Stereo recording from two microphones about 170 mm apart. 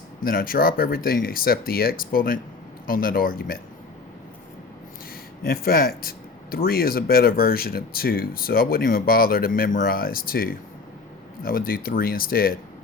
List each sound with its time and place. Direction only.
0.3 s speech: 60° left (ahead or behind)
5.4 s speech: 60° left (ahead or behind)